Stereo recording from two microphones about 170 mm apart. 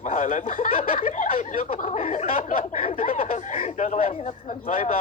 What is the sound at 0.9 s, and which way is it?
Speech, 35° left (ahead or behind).